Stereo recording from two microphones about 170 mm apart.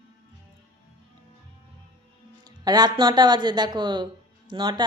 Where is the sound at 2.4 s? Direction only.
25° right (ahead or behind).